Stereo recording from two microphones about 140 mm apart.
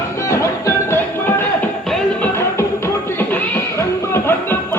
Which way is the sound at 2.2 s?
15° left (ahead or behind).